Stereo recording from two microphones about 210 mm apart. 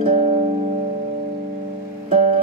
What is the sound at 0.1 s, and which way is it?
Music, 30° right (ahead or behind).